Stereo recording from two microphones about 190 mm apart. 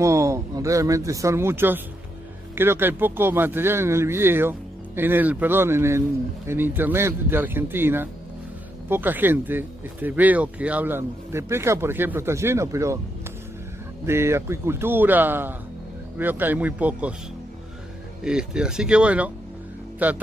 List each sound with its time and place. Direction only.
0.0 s speech: 15° right (ahead or behind)
14.0 s speech: 15° right (ahead or behind)
18.2 s speech: 5° right (ahead or behind)